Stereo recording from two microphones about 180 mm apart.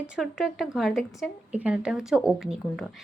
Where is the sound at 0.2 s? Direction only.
Centre (ahead or behind).